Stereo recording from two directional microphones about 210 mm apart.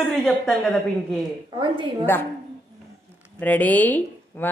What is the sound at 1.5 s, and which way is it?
Speech, 20° right (ahead or behind).